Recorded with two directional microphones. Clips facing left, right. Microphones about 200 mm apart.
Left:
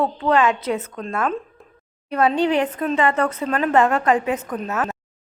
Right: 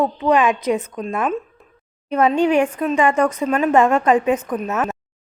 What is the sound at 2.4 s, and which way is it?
Speech, 20° left (ahead or behind).